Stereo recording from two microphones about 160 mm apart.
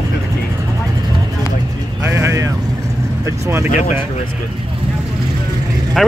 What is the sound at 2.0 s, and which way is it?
Speech, 15° right (ahead or behind).